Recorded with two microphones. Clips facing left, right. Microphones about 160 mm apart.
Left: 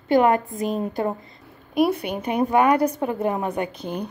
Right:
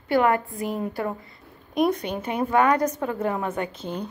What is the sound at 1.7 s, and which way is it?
A woman's voice, 10° left (ahead or behind).